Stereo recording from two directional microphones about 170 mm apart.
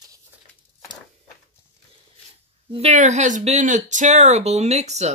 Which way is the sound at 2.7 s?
40° right (ahead or behind).